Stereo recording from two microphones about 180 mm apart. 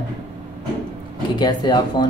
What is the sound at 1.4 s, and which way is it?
Speech, 25° left (ahead or behind).